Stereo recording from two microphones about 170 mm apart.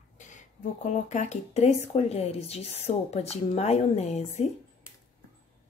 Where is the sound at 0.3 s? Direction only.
45° left (ahead or behind).